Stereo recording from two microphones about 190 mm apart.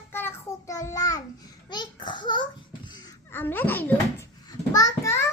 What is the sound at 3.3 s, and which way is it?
Child singing, 10° left (ahead or behind).